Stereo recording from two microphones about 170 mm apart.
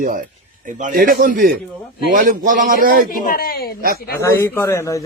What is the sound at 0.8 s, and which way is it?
A man's voice, 50° right (ahead or behind).